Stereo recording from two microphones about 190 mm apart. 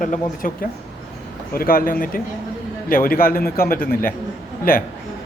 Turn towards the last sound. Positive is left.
turn(degrees=50)  # may be behind; listen again after turning